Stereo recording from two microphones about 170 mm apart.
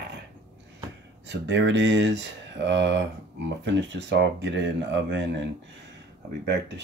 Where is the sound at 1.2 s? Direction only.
90° right.